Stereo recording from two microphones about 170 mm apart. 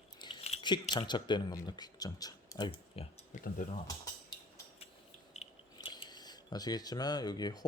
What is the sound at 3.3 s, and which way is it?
Speech, 45° left (ahead or behind).